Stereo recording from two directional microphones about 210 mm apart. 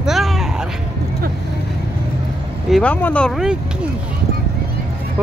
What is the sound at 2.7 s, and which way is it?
Speech, 5° left (ahead or behind).